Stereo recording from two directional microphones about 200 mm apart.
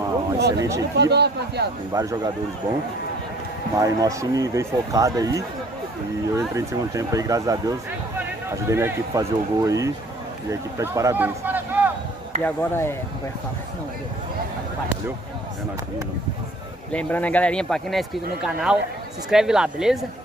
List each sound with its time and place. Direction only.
0.6 s speech: 15° right (ahead or behind)
0.9 s speech: 55° right (ahead or behind)
2.0 s speech: 15° right (ahead or behind)
3.7 s speech: 15° right (ahead or behind)
12.4 s speech: 10° left (ahead or behind)
16.9 s a man's voice: 5° left (ahead or behind)